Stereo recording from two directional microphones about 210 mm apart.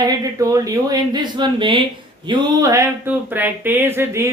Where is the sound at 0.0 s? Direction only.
20° right (ahead or behind).